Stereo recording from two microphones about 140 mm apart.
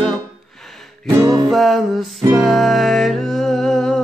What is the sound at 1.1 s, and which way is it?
Music, 20° right (ahead or behind).